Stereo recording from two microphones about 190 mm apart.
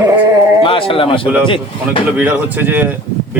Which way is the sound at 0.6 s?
30° left (ahead or behind).